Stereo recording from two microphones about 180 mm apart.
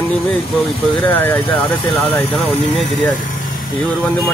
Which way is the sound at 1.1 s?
10° left (ahead or behind).